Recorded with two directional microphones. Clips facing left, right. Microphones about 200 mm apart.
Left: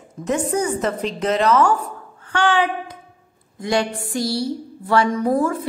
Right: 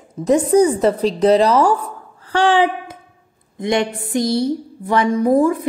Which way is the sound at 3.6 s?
20° right (ahead or behind).